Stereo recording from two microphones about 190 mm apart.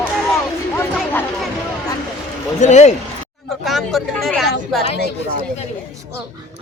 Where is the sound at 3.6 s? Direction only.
Centre (ahead or behind).